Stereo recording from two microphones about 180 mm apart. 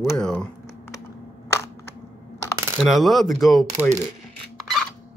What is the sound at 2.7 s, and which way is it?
Speech, centre (ahead or behind).